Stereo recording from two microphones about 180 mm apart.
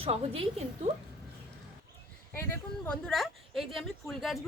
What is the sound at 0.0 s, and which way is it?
Speech, 35° right (ahead or behind).